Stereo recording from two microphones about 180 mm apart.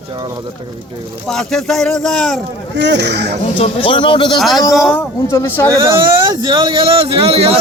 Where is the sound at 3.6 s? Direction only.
30° left (ahead or behind).